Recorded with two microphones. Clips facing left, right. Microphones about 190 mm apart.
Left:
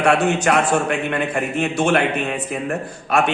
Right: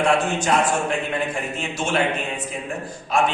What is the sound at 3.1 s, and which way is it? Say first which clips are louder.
Speech: left 2 dB; 65° left (ahead or behind).